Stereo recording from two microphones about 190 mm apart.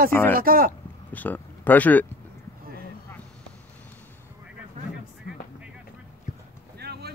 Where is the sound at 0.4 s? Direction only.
50° right (ahead or behind).